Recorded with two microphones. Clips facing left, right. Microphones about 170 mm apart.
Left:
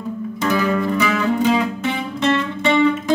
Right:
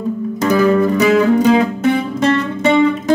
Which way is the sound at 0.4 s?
40° right (ahead or behind).